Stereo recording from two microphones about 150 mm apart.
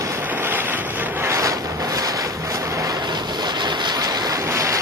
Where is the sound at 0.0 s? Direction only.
15° right (ahead or behind).